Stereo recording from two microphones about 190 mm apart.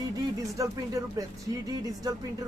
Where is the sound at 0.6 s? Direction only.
15° right (ahead or behind).